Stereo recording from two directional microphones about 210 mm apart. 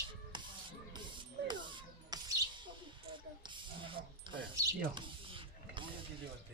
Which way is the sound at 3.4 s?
25° right (ahead or behind).